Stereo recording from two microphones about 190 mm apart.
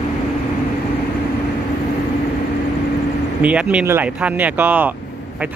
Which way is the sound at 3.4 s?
5° right (ahead or behind).